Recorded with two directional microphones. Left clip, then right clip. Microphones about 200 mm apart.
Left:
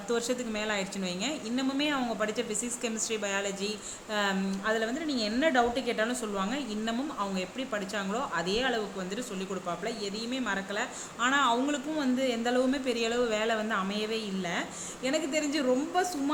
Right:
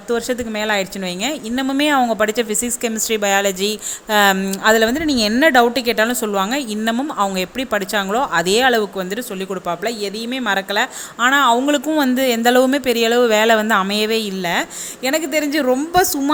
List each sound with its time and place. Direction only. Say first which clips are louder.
0.1 s a woman's voice: right 11 dB; 35° right (ahead or behind)